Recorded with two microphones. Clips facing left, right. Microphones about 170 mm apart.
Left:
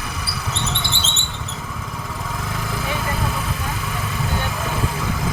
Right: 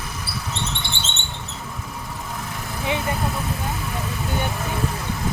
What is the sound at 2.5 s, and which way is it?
Vehicle, 90° left.